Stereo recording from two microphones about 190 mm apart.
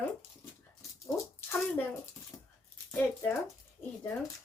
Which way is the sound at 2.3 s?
15° left (ahead or behind).